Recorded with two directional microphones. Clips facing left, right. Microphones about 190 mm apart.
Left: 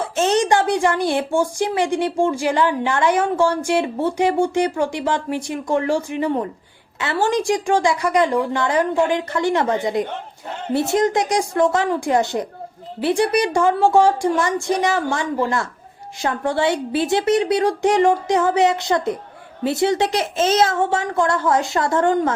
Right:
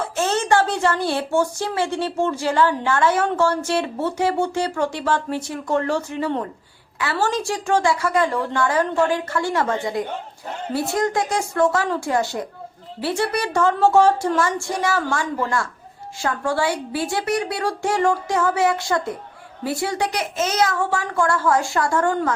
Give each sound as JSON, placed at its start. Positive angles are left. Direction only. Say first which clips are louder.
{"t": 0.2, "sound": "a woman's voice", "louder": "left 2 dB", "side_deg": 15}